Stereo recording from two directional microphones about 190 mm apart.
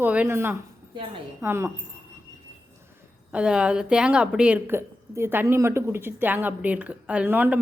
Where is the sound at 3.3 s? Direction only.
5° right (ahead or behind).